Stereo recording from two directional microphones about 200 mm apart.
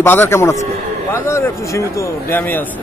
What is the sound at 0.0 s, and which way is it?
A man's voice, 10° left (ahead or behind).